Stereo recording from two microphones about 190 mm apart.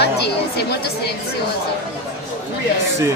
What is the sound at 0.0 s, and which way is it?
Speech, 60° left (ahead or behind).